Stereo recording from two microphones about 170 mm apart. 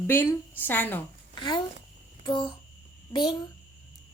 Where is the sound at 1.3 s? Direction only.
25° left (ahead or behind).